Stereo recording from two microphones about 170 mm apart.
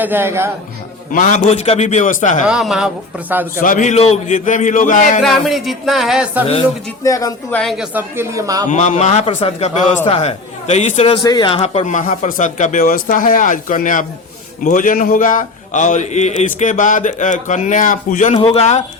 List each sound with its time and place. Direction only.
0.0 s speech: 10° right (ahead or behind)
1.1 s a man's voice: 50° left (ahead or behind)
1.5 s a man's voice: 35° left (ahead or behind)
2.5 s music: 5° right (ahead or behind)
3.6 s a man's voice: 50° left (ahead or behind)
5.2 s music: centre (ahead or behind)
7.0 s speech: 20° left (ahead or behind)
7.5 s music: centre (ahead or behind)
7.9 s speech: 15° right (ahead or behind)
8.7 s a man's voice: 45° left (ahead or behind)
11.2 s a man's voice: 25° left (ahead or behind); by 18.3 s 50° left (ahead or behind)
18.3 s a man's voice: 35° left (ahead or behind)